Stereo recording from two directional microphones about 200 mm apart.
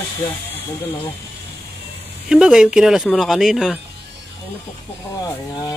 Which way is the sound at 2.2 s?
5° right (ahead or behind).